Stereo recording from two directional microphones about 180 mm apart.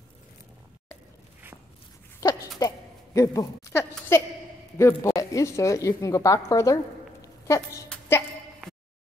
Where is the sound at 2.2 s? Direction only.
20° left (ahead or behind).